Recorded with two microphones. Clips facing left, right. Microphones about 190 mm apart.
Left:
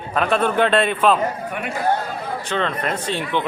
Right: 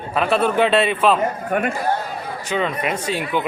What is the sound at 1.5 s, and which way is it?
Speech, 45° right (ahead or behind).